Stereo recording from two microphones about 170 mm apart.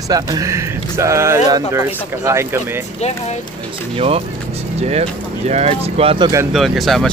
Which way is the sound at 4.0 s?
35° right (ahead or behind).